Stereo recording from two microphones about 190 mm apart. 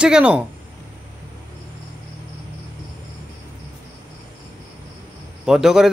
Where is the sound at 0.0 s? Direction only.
5° right (ahead or behind).